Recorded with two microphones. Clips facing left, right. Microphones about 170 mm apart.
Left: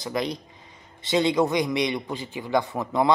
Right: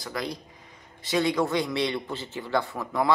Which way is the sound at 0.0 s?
20° left (ahead or behind).